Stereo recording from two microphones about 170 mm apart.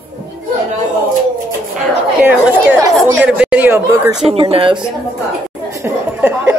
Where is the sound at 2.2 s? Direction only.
10° right (ahead or behind).